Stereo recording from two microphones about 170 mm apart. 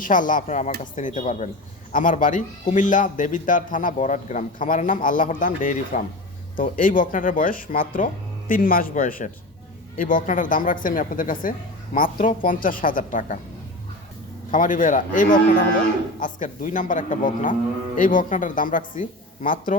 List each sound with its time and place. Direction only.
0.0 s speech: 50° left (ahead or behind)
14.5 s speech: 50° left (ahead or behind)